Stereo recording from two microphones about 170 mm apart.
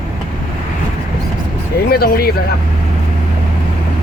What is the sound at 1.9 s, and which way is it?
Speech, 65° left (ahead or behind).